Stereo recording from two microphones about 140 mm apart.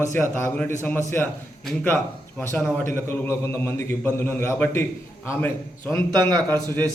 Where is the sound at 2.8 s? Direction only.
20° left (ahead or behind).